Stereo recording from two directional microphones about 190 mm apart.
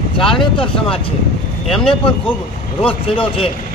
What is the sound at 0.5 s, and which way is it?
Speech, 25° left (ahead or behind).